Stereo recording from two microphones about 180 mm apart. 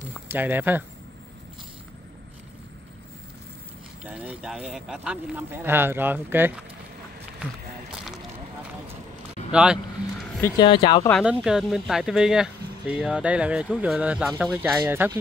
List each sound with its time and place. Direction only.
0.3 s speech: 10° right (ahead or behind)
4.0 s speech: 5° right (ahead or behind)
9.5 s vehicle: 5° right (ahead or behind)
10.6 s speech: 25° left (ahead or behind)
11.2 s speech: 5° right (ahead or behind)